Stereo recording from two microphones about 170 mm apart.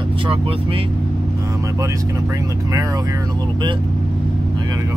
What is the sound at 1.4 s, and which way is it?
Speech, 20° right (ahead or behind).